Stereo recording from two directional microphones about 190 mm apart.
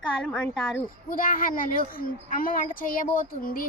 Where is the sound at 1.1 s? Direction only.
45° left (ahead or behind).